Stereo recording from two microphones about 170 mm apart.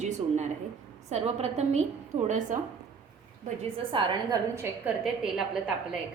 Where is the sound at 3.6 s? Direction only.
30° right (ahead or behind).